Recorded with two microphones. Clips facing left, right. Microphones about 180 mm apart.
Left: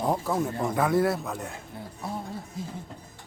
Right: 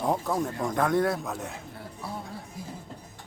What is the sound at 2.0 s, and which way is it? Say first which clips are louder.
Speech: left 3 dB; 20° left (ahead or behind).